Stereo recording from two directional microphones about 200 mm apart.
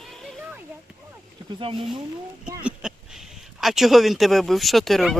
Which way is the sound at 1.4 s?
20° right (ahead or behind).